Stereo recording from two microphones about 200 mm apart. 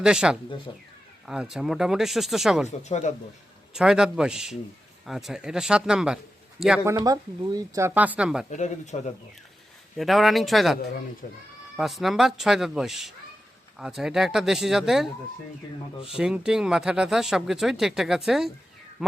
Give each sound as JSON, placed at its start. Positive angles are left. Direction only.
{"t": 0.0, "sound": "speech", "side_deg": -5}
{"t": 0.7, "sound": "speech", "side_deg": 20}
{"t": 1.3, "sound": "speech", "side_deg": -5}
{"t": 3.8, "sound": "speech", "side_deg": -5}
{"t": 6.8, "sound": "speech", "side_deg": -15}
{"t": 8.4, "sound": "speech", "side_deg": 35}
{"t": 10.0, "sound": "speech", "side_deg": 0}
{"t": 11.2, "sound": "speech", "side_deg": 40}
{"t": 11.8, "sound": "speech", "side_deg": 0}
{"t": 16.1, "sound": "speech", "side_deg": -5}